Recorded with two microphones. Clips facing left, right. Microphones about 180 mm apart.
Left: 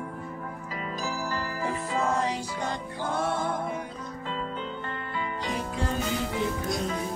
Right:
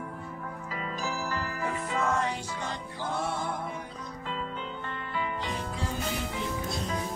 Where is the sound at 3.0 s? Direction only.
50° left (ahead or behind).